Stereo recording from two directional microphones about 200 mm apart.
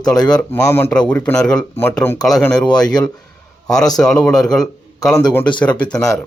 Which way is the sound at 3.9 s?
5° left (ahead or behind).